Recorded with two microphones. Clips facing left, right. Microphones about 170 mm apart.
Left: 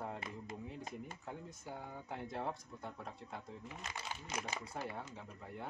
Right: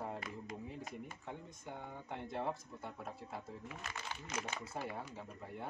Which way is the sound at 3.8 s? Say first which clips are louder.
Left 2 dB; 15° left (ahead or behind).